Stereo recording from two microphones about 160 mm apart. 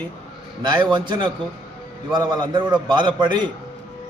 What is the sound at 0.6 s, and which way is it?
A man's voice, 30° right (ahead or behind).